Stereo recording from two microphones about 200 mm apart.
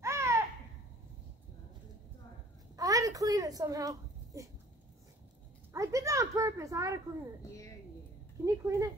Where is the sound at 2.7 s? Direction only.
15° right (ahead or behind).